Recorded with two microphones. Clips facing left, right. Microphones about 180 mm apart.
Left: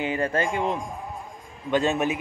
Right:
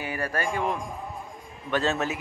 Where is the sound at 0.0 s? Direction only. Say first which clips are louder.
Left 5 dB; 20° left (ahead or behind).